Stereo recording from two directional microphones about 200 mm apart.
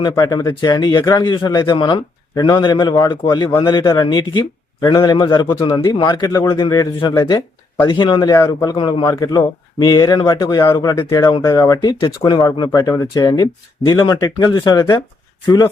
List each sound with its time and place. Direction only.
0.0 s speech: 20° left (ahead or behind)